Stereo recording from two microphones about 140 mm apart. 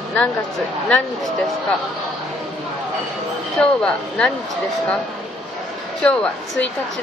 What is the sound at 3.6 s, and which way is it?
Speech, 5° left (ahead or behind).